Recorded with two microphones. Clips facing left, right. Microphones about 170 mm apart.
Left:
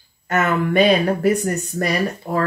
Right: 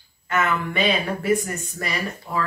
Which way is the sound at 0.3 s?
45° left (ahead or behind).